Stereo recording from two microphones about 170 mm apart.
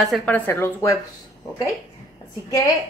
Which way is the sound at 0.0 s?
5° left (ahead or behind).